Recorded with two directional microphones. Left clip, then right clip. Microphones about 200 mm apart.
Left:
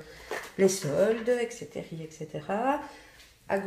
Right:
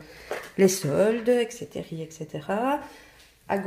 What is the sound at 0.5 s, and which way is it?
Speech, 45° right (ahead or behind).